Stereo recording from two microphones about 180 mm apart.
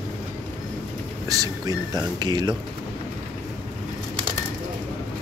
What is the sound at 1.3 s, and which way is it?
Speech, 20° right (ahead or behind).